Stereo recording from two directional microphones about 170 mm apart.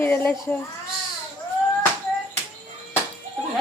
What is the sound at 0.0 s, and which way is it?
Speech, 15° left (ahead or behind).